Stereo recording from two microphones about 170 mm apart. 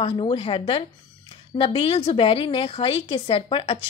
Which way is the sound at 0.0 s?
30° left (ahead or behind).